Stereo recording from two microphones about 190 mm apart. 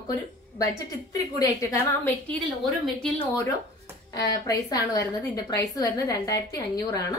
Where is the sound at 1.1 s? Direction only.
15° left (ahead or behind).